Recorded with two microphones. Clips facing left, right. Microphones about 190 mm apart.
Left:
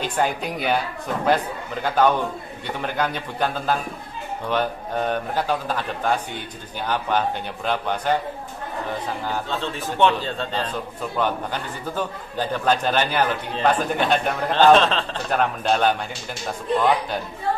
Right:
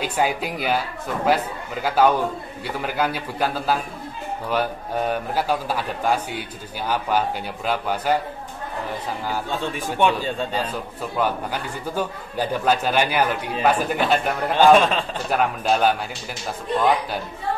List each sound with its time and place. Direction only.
0.0 s a man's voice: 10° right (ahead or behind)
9.3 s a man's voice: 10° right (ahead or behind)